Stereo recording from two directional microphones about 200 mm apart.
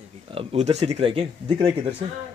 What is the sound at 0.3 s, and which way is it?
Speech, 30° right (ahead or behind).